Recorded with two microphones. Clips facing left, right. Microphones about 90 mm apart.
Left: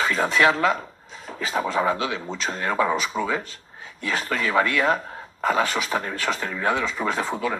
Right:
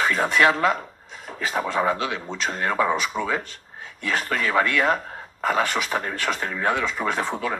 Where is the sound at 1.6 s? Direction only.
5° right (ahead or behind).